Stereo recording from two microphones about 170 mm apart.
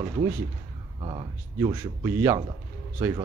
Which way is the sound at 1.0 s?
30° right (ahead or behind).